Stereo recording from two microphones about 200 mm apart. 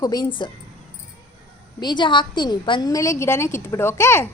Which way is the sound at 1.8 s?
20° left (ahead or behind).